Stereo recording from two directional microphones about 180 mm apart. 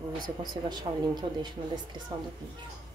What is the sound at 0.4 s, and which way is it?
Speech, 25° right (ahead or behind).